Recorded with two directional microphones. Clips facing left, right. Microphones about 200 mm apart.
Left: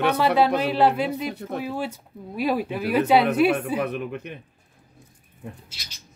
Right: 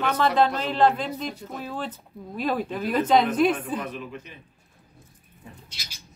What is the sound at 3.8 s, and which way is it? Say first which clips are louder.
Speech: left 6 dB; 60° left (ahead or behind).